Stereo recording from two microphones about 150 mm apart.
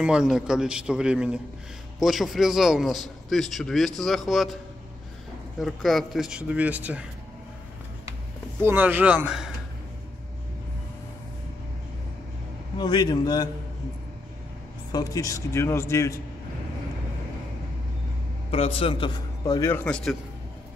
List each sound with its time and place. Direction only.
0.0 s a man's voice: 5° right (ahead or behind)
5.6 s a man's voice: centre (ahead or behind)
8.6 s speech: 10° right (ahead or behind)
12.7 s a man's voice: 25° left (ahead or behind)
14.9 s a man's voice: 25° left (ahead or behind)
18.5 s a man's voice: 40° left (ahead or behind); by 20.0 s 10° left (ahead or behind)